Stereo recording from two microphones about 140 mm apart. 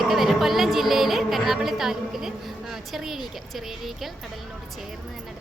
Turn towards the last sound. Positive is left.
turn(degrees=0)  # may be behind; listen again after turning